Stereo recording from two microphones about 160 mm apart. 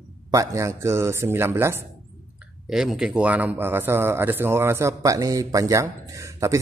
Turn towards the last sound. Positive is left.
turn(degrees=-20)  # may be behind; listen again after turning